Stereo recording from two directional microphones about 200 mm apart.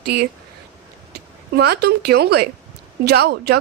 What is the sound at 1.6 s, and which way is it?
Speech, 55° right (ahead or behind).